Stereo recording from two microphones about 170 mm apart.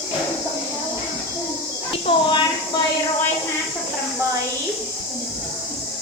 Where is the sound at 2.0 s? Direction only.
25° left (ahead or behind).